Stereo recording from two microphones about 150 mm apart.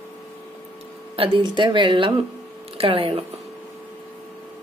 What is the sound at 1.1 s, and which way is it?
Speech, 35° right (ahead or behind).